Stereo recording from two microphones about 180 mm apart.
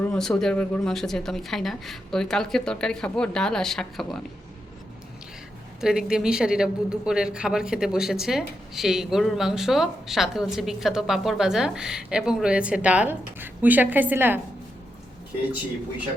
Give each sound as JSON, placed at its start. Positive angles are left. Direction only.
{"t": 0.0, "sound": "speech", "side_deg": 5}
{"t": 5.8, "sound": "speech", "side_deg": -5}